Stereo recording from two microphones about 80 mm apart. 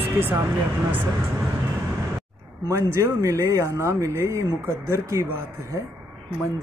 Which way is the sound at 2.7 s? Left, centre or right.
Right.